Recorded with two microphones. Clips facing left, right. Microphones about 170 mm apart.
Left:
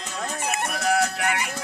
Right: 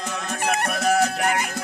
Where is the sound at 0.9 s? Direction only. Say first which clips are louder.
Right 2 dB; 45° right (ahead or behind).